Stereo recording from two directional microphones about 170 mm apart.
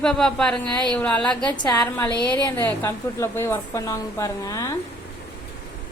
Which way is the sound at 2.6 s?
15° left (ahead or behind).